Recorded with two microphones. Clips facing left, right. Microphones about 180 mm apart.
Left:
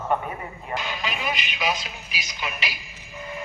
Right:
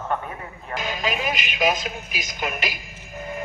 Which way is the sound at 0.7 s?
45° right (ahead or behind).